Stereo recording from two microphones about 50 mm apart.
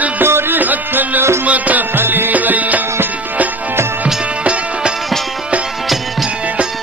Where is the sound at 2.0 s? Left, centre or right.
Right.